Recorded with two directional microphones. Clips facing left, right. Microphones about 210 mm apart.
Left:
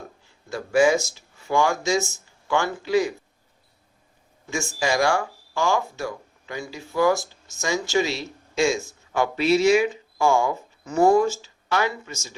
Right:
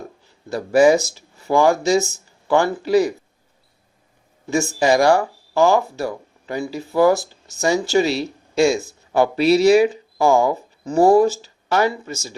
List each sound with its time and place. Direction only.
0.5 s speech: 35° right (ahead or behind)
4.4 s speech: 35° right (ahead or behind)